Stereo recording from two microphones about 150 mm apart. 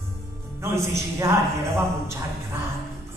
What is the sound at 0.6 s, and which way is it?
A man's voice, 20° right (ahead or behind).